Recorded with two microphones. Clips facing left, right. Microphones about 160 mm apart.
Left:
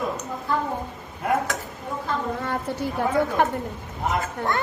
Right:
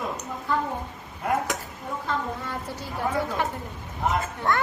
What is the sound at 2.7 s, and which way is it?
Speech, 60° left (ahead or behind).